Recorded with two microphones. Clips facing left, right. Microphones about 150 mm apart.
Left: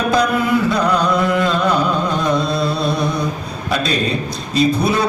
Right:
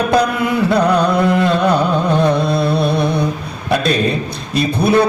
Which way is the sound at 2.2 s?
60° right (ahead or behind).